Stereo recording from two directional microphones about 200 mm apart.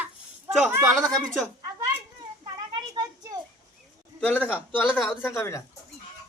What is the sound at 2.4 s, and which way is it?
Children playing, 20° right (ahead or behind).